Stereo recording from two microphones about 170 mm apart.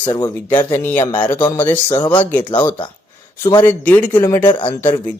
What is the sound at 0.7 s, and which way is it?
Speech, 15° left (ahead or behind).